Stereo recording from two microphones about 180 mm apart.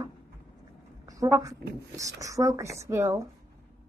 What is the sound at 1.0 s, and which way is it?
A woman's voice, 20° right (ahead or behind).